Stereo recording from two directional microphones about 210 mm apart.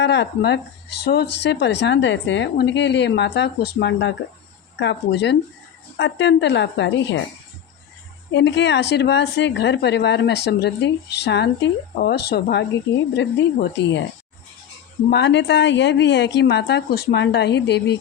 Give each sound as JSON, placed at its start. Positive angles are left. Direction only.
{"t": 0.0, "sound": "a woman's voice", "side_deg": 55}
{"t": 8.3, "sound": "a woman's voice", "side_deg": 55}
{"t": 15.1, "sound": "a woman's voice", "side_deg": 55}